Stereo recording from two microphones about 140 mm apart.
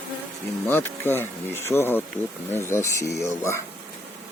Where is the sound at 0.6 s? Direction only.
15° left (ahead or behind).